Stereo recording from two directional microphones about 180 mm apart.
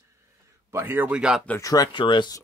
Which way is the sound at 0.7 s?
15° right (ahead or behind).